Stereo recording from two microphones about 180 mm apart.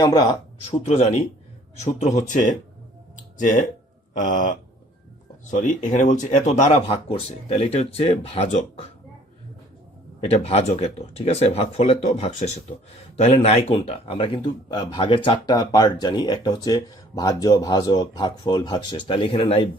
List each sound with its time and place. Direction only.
0.0 s speech: 20° left (ahead or behind)
0.9 s speech: 35° left (ahead or behind)
4.1 s speech: 45° left (ahead or behind)
10.2 s speech: 35° left (ahead or behind)